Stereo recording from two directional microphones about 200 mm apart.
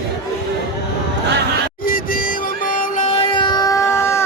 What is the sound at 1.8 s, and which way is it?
Music, 45° left (ahead or behind).